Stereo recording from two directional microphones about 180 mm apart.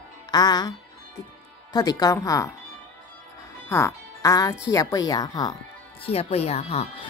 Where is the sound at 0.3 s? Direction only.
20° left (ahead or behind).